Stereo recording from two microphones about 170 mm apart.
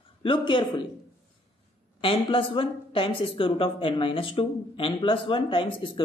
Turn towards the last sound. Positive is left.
turn(degrees=30)  # may be behind; listen again after turning